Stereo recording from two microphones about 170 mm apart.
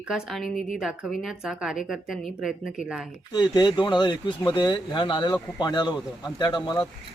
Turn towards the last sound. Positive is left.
turn(degrees=25)  # may be behind; listen again after turning